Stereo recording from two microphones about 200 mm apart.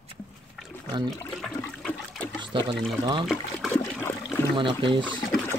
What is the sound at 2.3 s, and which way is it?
Water, 25° right (ahead or behind).